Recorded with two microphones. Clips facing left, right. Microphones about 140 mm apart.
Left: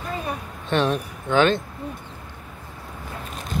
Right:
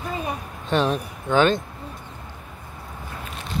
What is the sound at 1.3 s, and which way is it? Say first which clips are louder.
Speech: even; 40° right (ahead or behind).